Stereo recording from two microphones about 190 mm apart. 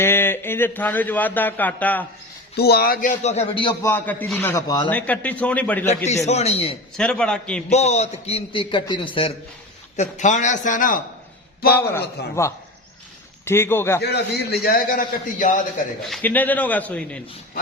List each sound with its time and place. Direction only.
0.0 s speech: 10° left (ahead or behind)
2.6 s a man's voice: 55° left (ahead or behind); by 3.8 s 25° left (ahead or behind)
3.8 s speech: 10° left (ahead or behind)
4.9 s speech: 10° left (ahead or behind)
6.2 s a man's voice: 35° left (ahead or behind)
6.9 s a man's voice: 5° left (ahead or behind)
7.7 s a man's voice: 35° left (ahead or behind)
10.0 s a man's voice: 40° left (ahead or behind)
11.7 s speech: 15° left (ahead or behind)
14.0 s a man's voice: 60° left (ahead or behind); by 15.5 s 45° left (ahead or behind)
16.0 s speech: 5° left (ahead or behind)